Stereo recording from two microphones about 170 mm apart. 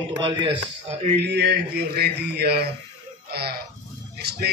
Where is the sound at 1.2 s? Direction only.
90° right.